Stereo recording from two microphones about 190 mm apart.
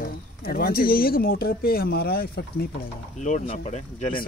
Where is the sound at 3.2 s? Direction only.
35° left (ahead or behind).